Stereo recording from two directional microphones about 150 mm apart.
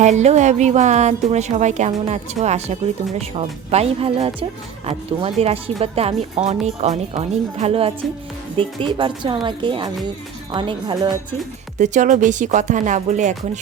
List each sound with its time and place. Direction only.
0.0 s speech: 50° right (ahead or behind); by 11.3 s 30° right (ahead or behind)
11.8 s speech: 55° right (ahead or behind)